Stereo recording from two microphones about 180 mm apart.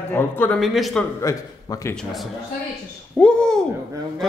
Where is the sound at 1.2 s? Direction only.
20° left (ahead or behind).